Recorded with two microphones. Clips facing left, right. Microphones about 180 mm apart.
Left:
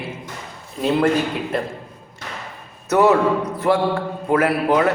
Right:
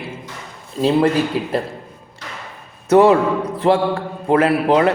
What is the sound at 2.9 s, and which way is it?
A man's voice, 25° right (ahead or behind).